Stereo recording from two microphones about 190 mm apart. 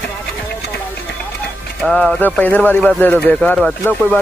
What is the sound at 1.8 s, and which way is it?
Speech, 5° left (ahead or behind).